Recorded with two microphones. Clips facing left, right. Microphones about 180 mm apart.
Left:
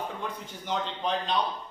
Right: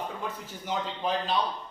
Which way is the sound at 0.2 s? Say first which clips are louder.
Even; 5° right (ahead or behind).